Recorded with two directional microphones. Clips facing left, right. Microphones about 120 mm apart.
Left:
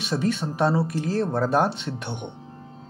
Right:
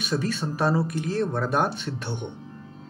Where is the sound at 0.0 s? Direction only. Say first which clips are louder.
Left 2 dB; 25° left (ahead or behind).